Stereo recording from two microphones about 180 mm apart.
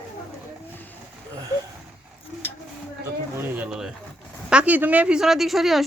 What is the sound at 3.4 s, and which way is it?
A woman's voice, 10° right (ahead or behind).